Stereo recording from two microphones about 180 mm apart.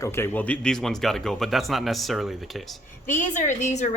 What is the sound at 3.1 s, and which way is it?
Speech, 45° left (ahead or behind).